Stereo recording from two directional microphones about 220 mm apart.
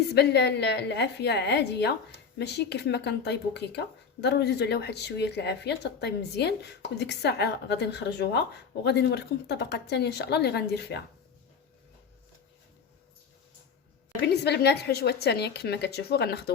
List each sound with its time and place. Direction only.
0.1 s speech: 50° left (ahead or behind)
14.4 s speech: 50° left (ahead or behind)